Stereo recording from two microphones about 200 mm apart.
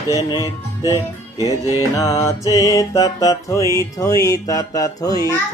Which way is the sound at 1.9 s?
15° left (ahead or behind).